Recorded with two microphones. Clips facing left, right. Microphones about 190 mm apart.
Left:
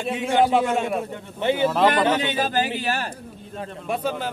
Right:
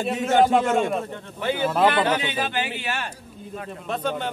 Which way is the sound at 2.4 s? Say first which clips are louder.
Left 4 dB; 40° left (ahead or behind).